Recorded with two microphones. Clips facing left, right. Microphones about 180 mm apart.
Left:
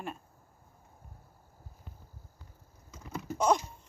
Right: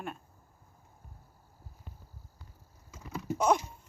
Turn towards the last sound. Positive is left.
turn(degrees=-5)  # may be behind; listen again after turning